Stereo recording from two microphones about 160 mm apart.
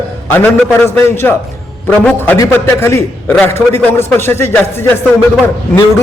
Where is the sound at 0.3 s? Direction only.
15° left (ahead or behind).